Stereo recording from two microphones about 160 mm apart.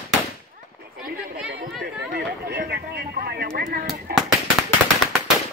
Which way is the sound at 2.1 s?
80° right.